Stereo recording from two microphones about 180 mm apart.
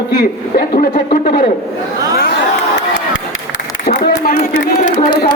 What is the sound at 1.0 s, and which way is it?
Speech, 40° left (ahead or behind).